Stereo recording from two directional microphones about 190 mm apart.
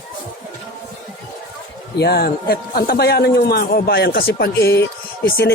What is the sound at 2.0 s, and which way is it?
A man's voice, 55° left (ahead or behind).